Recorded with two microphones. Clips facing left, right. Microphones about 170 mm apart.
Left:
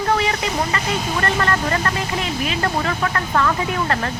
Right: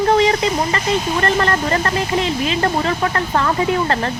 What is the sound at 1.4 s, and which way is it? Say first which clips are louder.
Speech: right 2 dB; 30° right (ahead or behind).